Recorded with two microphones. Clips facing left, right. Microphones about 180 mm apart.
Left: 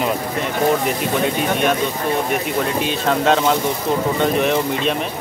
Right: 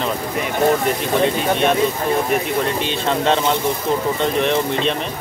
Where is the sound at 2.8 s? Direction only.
Centre (ahead or behind).